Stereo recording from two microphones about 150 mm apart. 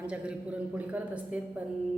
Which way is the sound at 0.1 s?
10° right (ahead or behind).